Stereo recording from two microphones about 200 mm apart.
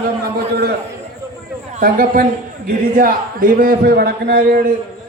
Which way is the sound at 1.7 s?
45° right (ahead or behind).